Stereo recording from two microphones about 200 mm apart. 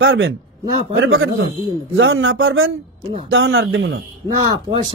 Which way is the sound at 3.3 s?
80° right.